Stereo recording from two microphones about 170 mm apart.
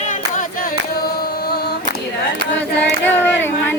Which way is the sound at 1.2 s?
65° left (ahead or behind).